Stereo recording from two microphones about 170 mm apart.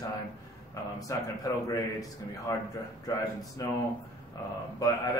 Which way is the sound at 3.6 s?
20° left (ahead or behind).